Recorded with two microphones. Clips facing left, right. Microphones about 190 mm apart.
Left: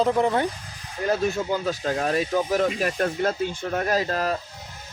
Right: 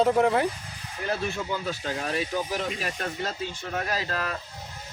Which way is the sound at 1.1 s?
40° left (ahead or behind).